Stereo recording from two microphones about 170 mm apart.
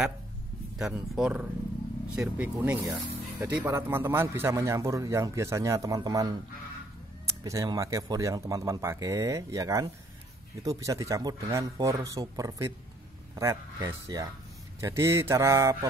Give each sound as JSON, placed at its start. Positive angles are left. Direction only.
{"t": 0.7, "sound": "speech", "side_deg": 0}
{"t": 7.4, "sound": "speech", "side_deg": -20}